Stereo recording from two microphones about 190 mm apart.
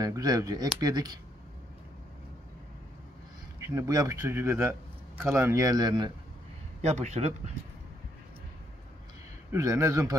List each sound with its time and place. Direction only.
0.0 s speech: 20° right (ahead or behind)
3.5 s a man's voice: 15° right (ahead or behind)
6.8 s speech: 35° right (ahead or behind)
9.5 s a man's voice: 15° right (ahead or behind)